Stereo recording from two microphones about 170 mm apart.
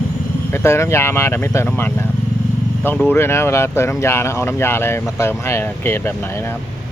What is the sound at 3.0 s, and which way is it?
Speech, 15° left (ahead or behind).